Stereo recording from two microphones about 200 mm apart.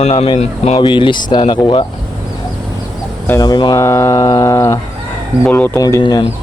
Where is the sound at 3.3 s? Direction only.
20° left (ahead or behind).